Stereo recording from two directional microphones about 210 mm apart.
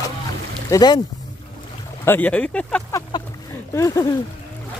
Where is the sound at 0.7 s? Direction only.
20° left (ahead or behind).